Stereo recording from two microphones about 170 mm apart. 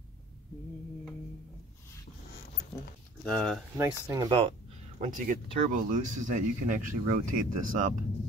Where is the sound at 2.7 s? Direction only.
15° left (ahead or behind).